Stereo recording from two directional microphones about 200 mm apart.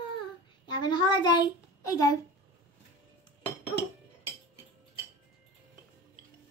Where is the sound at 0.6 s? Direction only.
20° left (ahead or behind).